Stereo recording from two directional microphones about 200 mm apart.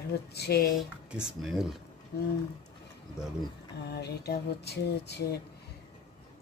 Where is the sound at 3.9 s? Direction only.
55° left (ahead or behind).